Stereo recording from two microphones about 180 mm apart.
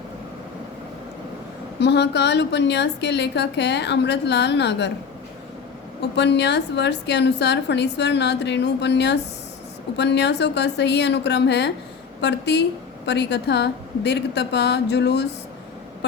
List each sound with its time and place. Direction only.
1.8 s a woman's voice: 70° left (ahead or behind)
6.0 s a woman's voice: 70° left (ahead or behind)